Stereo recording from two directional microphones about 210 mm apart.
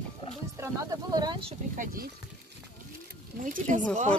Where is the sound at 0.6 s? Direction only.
15° right (ahead or behind).